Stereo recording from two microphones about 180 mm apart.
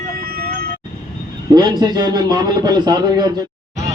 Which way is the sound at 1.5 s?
20° right (ahead or behind).